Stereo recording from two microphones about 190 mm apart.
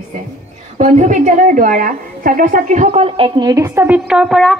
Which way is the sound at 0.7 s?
35° right (ahead or behind).